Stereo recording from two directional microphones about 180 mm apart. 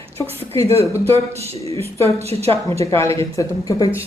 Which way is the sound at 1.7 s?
35° right (ahead or behind).